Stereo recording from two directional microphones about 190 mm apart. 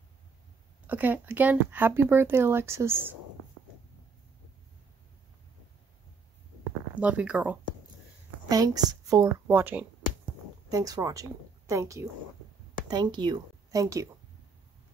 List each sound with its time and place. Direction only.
0.8 s speech: 10° right (ahead or behind)
7.0 s speech: 5° right (ahead or behind)
8.5 s a woman's voice: 20° right (ahead or behind)